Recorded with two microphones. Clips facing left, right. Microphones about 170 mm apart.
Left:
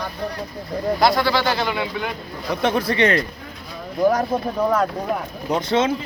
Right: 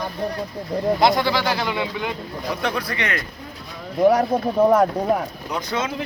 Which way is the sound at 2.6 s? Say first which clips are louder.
Left 9 dB; 25° left (ahead or behind).